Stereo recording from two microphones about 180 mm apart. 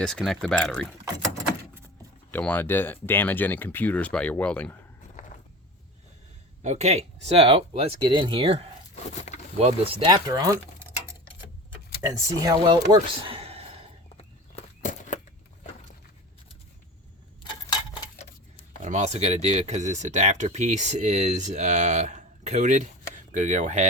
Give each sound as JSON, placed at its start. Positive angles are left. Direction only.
{"t": 0.2, "sound": "speech", "side_deg": 0}
{"t": 2.3, "sound": "speech", "side_deg": 10}
{"t": 6.6, "sound": "speech", "side_deg": -35}
{"t": 12.0, "sound": "speech", "side_deg": -20}
{"t": 14.2, "sound": "walk", "side_deg": 40}
{"t": 18.8, "sound": "speech", "side_deg": -40}